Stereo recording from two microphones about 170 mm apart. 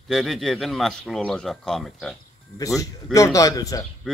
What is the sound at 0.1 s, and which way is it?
Speech, centre (ahead or behind).